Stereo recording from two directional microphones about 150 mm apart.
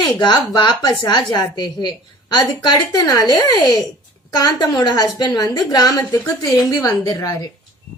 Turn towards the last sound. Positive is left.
turn(degrees=25)  # may be behind; listen again after turning